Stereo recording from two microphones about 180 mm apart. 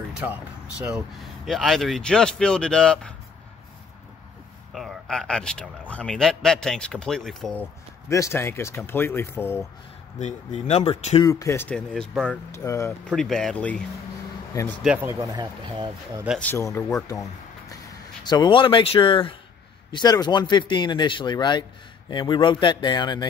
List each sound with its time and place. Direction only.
0.2 s speech: 5° right (ahead or behind)
4.7 s speech: centre (ahead or behind)
8.1 s speech: 15° left (ahead or behind)
10.1 s speech: 35° left (ahead or behind)
11.2 s speech: 15° left (ahead or behind)
12.5 s speech: 15° left (ahead or behind)
13.1 s speech: centre (ahead or behind)
14.5 s speech: 15° left (ahead or behind)
14.8 s speech: 10° right (ahead or behind)
16.3 s speech: 10° left (ahead or behind)